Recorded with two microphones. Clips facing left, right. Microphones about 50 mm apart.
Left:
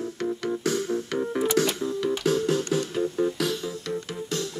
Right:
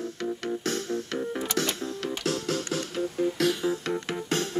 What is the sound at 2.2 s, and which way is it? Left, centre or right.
Music, left.